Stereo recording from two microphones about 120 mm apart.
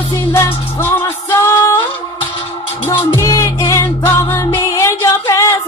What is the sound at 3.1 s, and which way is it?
Music, 25° left (ahead or behind).